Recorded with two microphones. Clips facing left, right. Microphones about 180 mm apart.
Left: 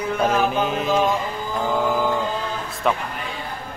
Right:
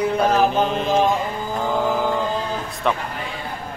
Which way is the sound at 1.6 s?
Centre (ahead or behind).